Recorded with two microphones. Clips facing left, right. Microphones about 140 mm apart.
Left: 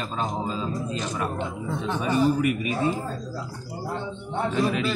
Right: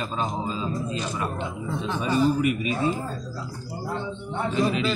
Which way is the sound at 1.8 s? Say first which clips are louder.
Even; 55° left (ahead or behind).